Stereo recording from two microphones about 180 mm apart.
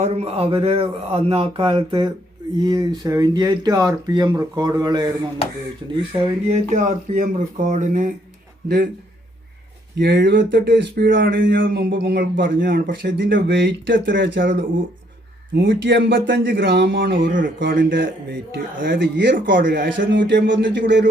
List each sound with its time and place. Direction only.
0.0 s speech: 35° right (ahead or behind)
6.5 s speech: 40° right (ahead or behind)
10.0 s speech: 70° right (ahead or behind)
17.2 s speech: 50° right (ahead or behind)
17.9 s speech: 60° right (ahead or behind)
20.0 s speech: 80° right